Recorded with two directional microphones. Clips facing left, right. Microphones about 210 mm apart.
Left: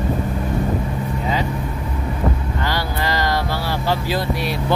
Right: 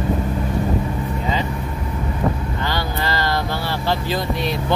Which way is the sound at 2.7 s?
10° left (ahead or behind).